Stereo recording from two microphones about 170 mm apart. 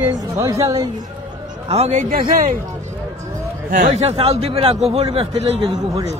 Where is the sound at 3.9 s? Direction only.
40° right (ahead or behind).